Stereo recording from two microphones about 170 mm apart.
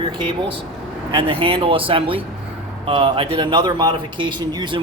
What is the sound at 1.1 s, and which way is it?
A man's voice, 30° right (ahead or behind).